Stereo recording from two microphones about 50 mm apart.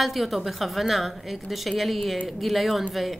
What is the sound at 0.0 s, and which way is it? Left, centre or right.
A woman's voice, centre.